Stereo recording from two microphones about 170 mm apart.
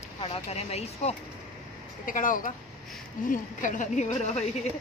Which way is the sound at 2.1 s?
55° left (ahead or behind).